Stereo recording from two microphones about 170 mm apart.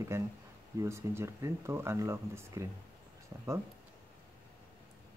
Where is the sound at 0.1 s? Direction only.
15° right (ahead or behind).